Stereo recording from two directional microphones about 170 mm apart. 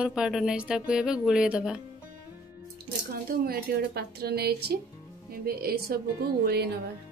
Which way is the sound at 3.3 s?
65° right (ahead or behind).